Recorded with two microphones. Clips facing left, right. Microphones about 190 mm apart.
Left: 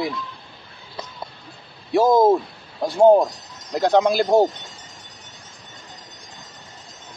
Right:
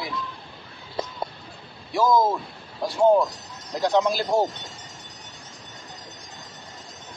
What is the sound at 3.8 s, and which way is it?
Speech, 60° left (ahead or behind).